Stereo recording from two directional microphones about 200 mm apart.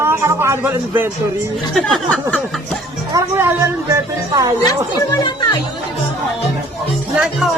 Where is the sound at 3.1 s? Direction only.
15° right (ahead or behind).